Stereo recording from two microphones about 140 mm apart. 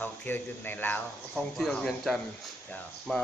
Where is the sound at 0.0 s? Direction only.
15° left (ahead or behind).